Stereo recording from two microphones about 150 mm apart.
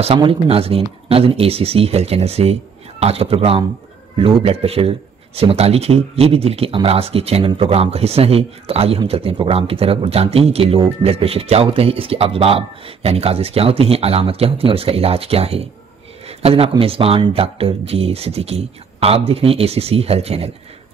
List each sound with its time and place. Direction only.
0.2 s speech: 40° right (ahead or behind)